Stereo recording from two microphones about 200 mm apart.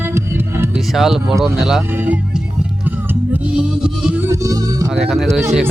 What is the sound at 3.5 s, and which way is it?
Music, 5° right (ahead or behind).